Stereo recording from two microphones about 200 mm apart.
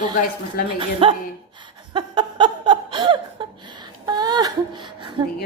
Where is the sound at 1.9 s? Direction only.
20° right (ahead or behind).